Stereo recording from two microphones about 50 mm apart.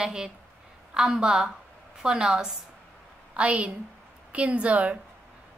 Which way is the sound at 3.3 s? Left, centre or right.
Right.